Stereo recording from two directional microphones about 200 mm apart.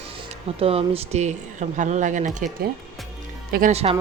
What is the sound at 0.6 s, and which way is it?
Speech, 30° right (ahead or behind).